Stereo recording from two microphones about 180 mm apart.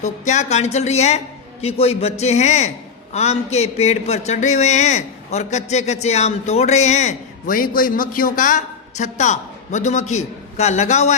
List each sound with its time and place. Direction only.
0.0 s a woman's voice: 40° left (ahead or behind)